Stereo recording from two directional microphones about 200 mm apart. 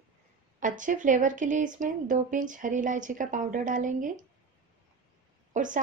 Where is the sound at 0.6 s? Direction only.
40° right (ahead or behind).